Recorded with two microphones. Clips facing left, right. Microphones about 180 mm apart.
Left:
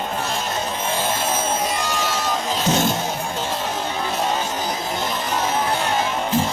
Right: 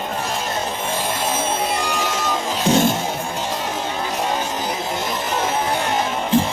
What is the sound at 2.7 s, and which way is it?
Music, 10° right (ahead or behind).